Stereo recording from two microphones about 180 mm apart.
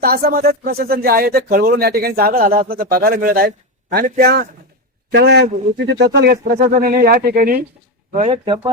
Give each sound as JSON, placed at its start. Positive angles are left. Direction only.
{"t": 0.0, "sound": "speech", "side_deg": -55}
{"t": 8.1, "sound": "speech", "side_deg": -35}